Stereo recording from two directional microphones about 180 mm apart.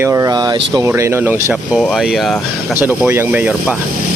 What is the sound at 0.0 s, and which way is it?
Speech, 15° right (ahead or behind).